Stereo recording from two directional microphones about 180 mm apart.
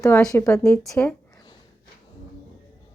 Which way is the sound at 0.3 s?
15° left (ahead or behind).